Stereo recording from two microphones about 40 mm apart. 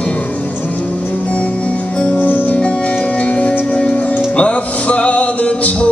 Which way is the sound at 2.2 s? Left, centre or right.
Left.